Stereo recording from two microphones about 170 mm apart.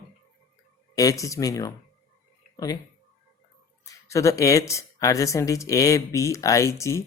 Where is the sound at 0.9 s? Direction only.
20° left (ahead or behind).